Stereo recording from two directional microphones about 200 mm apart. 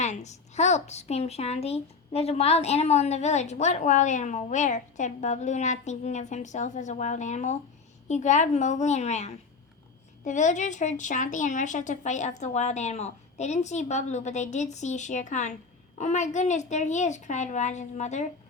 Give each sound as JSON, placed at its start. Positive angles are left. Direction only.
{"t": 0.0, "sound": "a woman's voice", "side_deg": 35}